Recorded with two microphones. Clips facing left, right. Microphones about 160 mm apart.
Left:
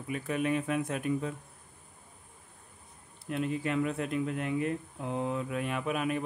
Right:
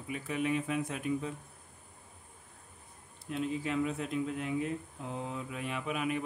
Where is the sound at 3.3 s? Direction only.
60° left (ahead or behind).